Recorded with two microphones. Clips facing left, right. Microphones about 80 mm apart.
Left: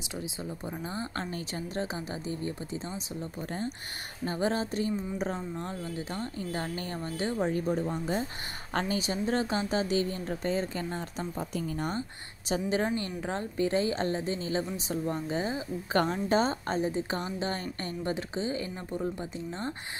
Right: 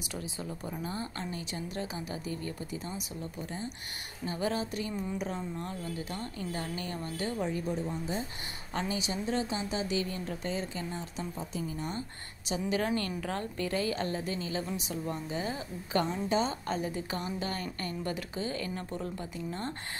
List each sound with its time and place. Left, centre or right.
0.1 s a woman's voice: centre
1.1 s a woman's voice: left
3.3 s a woman's voice: left
4.3 s a woman's voice: left
7.5 s a woman's voice: left
7.9 s speech: left
8.7 s a woman's voice: left
12.4 s a woman's voice: left
12.9 s a woman's voice: left
15.9 s a woman's voice: left